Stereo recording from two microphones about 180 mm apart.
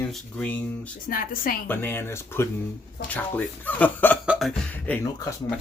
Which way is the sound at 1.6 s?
10° left (ahead or behind).